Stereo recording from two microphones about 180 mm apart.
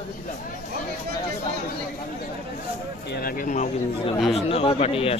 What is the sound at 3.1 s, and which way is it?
Speech, 50° left (ahead or behind).